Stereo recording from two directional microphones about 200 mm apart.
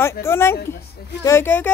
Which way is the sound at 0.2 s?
10° left (ahead or behind).